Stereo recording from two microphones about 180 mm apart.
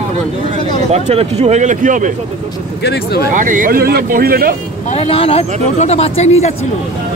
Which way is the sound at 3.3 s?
50° right (ahead or behind).